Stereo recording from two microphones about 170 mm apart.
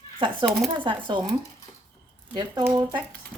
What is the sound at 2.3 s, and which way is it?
Speech, 25° right (ahead or behind).